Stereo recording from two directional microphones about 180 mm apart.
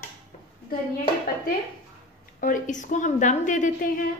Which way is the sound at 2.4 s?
45° left (ahead or behind).